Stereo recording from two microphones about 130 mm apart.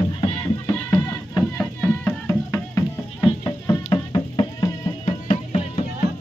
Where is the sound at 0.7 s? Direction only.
20° left (ahead or behind).